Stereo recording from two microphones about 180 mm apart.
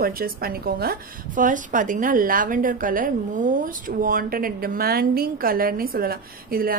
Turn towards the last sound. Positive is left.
turn(degrees=-55)  # may be behind; listen again after turning